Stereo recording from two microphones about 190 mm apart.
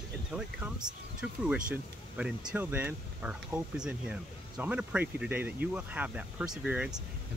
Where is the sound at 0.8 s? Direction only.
20° right (ahead or behind).